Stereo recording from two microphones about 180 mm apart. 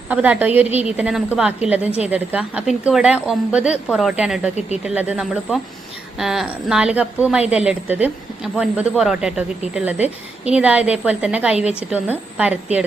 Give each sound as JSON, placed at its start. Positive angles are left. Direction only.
{"t": 0.1, "sound": "a woman's voice", "side_deg": -10}